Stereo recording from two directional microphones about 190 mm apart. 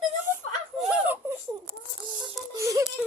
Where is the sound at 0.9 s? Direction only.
10° right (ahead or behind).